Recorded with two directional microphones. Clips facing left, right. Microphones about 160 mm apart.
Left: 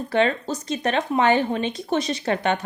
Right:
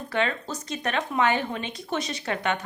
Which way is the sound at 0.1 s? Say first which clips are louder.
Left 6 dB; 30° left (ahead or behind).